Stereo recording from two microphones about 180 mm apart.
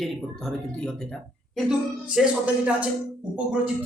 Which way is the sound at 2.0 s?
5° right (ahead or behind).